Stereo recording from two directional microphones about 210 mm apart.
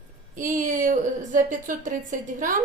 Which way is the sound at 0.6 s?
40° right (ahead or behind).